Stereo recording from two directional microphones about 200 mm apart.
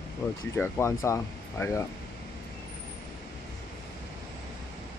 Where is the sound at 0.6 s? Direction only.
15° left (ahead or behind).